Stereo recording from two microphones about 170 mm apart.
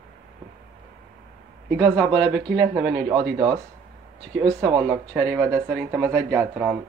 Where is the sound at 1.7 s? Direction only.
15° right (ahead or behind).